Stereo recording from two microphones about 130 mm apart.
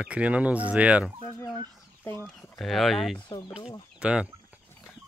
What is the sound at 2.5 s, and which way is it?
Speech, centre (ahead or behind).